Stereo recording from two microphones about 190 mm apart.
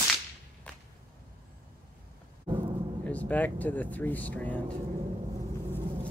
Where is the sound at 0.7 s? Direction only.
5° left (ahead or behind).